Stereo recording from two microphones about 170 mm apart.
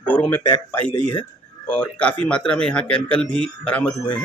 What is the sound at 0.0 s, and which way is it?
A man's voice, 10° left (ahead or behind).